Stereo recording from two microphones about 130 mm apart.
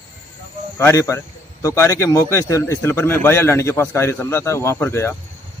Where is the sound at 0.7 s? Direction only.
20° left (ahead or behind).